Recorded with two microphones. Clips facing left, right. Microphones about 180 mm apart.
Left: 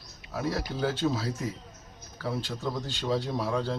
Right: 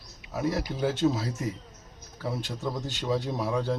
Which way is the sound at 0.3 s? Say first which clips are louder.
Right 2 dB; 20° right (ahead or behind).